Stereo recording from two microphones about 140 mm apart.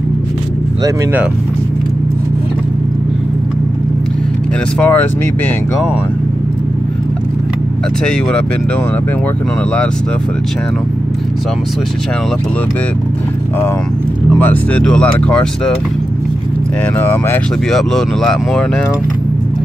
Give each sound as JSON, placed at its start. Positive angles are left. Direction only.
{"t": 4.7, "sound": "speech", "side_deg": 10}
{"t": 14.4, "sound": "speech", "side_deg": 10}
{"t": 17.0, "sound": "speech", "side_deg": 15}
{"t": 17.6, "sound": "speech", "side_deg": 0}